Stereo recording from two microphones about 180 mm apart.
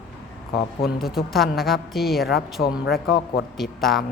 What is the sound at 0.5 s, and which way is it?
Speech, 60° left (ahead or behind).